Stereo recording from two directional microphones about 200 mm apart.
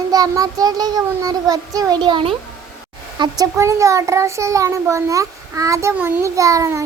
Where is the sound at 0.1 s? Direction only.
20° right (ahead or behind).